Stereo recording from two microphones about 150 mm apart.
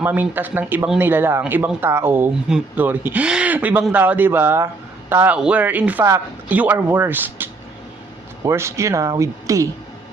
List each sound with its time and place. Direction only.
0.0 s speech: 10° right (ahead or behind)